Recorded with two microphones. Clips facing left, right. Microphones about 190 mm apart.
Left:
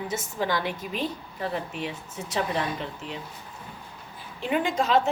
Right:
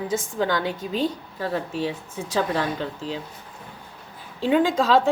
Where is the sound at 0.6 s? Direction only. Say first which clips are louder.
Right 4 dB; 30° right (ahead or behind).